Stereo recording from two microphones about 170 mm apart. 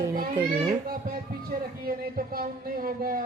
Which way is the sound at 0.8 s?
60° right (ahead or behind).